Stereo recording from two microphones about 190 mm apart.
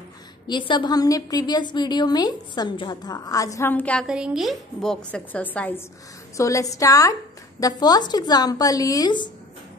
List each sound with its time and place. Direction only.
0.5 s a woman's voice: 25° left (ahead or behind)